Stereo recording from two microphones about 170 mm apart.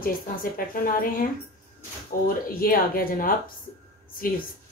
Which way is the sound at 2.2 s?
60° left (ahead or behind).